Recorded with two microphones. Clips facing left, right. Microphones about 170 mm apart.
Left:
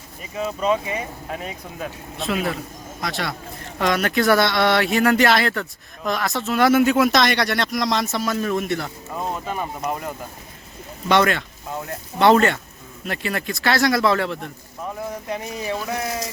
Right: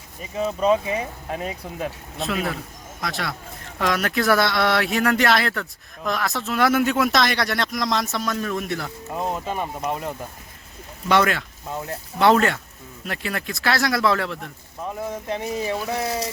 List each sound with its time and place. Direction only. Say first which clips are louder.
0.4 s speech: right 2 dB; 5° right (ahead or behind)
11.1 s speech: left 1 dB; 5° right (ahead or behind)
15.6 s speech: right 1 dB; 30° right (ahead or behind)